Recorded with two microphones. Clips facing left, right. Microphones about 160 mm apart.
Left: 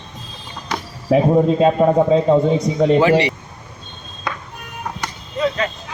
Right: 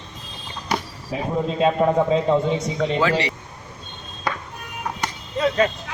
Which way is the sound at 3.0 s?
15° left (ahead or behind).